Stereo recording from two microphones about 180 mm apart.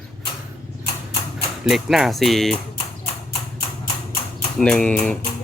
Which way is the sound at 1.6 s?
Centre (ahead or behind).